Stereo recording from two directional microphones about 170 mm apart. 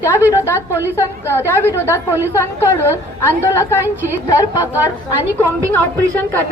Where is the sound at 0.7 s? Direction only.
10° right (ahead or behind).